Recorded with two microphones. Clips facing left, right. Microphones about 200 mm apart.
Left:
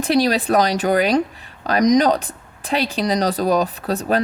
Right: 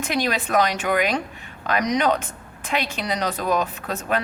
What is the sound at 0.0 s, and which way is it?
Speech, 35° left (ahead or behind).